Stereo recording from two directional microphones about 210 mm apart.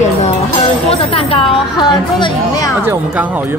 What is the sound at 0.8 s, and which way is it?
Speech, 25° left (ahead or behind).